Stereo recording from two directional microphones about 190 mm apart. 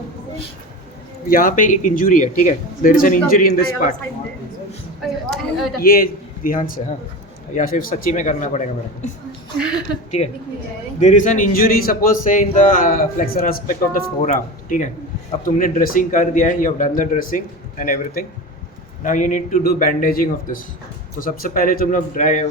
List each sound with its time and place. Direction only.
1.3 s a man's voice: 45° left (ahead or behind)
5.3 s speech: centre (ahead or behind)
5.8 s a man's voice: 50° left (ahead or behind)
10.2 s a woman's voice: 30° left (ahead or behind)